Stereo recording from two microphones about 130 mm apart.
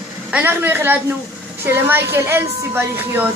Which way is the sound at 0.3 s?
10° right (ahead or behind).